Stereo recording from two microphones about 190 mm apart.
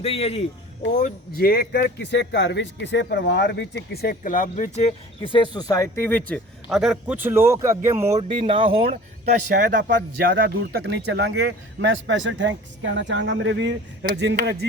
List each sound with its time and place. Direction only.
0.0 s speech: 30° left (ahead or behind); by 8.2 s 15° right (ahead or behind)
8.3 s speech: 25° right (ahead or behind)
9.6 s speech: 45° right (ahead or behind)